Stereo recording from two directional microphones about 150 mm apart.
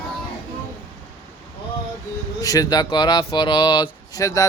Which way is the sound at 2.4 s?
25° left (ahead or behind).